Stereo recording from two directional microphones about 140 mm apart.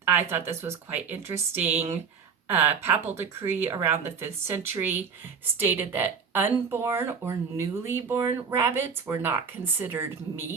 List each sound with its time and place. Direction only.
0.3 s speech: 15° right (ahead or behind)